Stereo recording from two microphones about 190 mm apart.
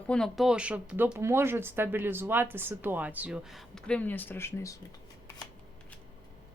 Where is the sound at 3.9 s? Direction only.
10° left (ahead or behind).